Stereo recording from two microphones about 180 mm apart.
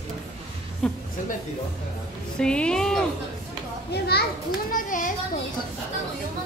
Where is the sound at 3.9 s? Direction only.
65° left (ahead or behind).